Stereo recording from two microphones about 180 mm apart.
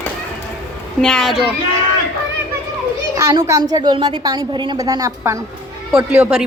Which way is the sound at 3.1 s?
15° right (ahead or behind).